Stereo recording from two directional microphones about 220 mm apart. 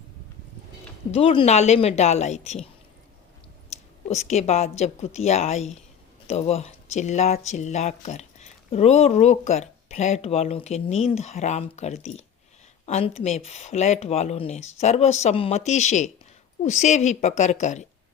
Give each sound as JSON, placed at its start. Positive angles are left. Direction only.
{"t": 1.1, "sound": "speech", "side_deg": 25}
{"t": 3.7, "sound": "a woman's voice", "side_deg": 30}